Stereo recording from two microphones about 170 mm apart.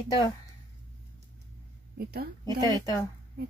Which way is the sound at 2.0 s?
70° right (ahead or behind).